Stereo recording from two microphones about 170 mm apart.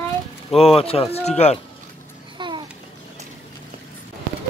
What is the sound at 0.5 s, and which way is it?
Speech, 35° left (ahead or behind).